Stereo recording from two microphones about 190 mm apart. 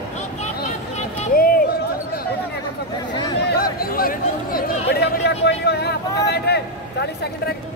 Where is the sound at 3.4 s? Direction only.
55° left (ahead or behind).